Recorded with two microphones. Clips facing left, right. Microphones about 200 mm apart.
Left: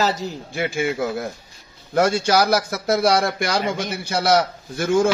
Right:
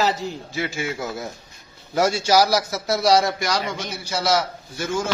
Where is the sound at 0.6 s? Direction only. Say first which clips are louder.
Left 5 dB; 55° left (ahead or behind).